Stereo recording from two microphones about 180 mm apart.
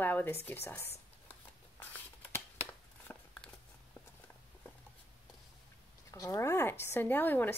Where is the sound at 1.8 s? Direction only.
10° left (ahead or behind).